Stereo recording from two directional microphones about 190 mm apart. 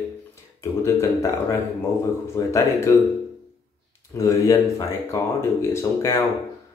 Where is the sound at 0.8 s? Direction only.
15° left (ahead or behind).